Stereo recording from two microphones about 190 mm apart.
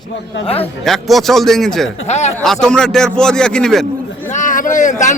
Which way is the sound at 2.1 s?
35° left (ahead or behind).